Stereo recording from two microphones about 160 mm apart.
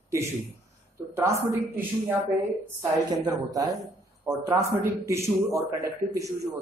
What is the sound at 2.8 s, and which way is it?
Speech, 20° right (ahead or behind).